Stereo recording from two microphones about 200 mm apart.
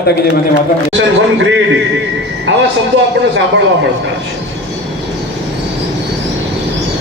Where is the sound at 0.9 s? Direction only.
65° right (ahead or behind).